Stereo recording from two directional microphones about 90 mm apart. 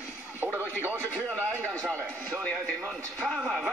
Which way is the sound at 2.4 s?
10° left (ahead or behind).